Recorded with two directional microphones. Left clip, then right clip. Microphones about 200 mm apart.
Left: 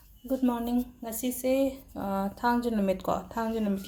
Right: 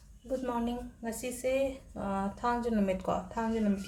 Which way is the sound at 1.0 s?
40° left (ahead or behind).